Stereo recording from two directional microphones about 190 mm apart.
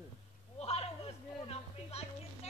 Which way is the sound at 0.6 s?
35° left (ahead or behind).